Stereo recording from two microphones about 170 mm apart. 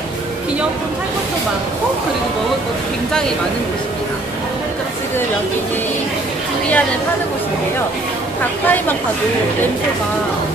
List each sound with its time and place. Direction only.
8.6 s speech: 10° left (ahead or behind)